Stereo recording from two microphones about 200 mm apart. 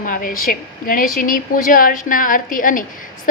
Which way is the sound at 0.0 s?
45° left (ahead or behind).